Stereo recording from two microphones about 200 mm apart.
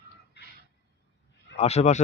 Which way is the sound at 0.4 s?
55° left (ahead or behind).